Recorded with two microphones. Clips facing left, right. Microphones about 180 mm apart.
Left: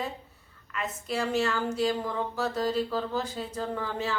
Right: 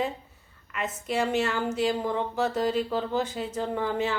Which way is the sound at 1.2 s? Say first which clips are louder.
Right 2 dB; 20° right (ahead or behind).